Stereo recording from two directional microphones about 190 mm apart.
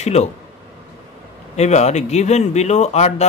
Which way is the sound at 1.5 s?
35° left (ahead or behind).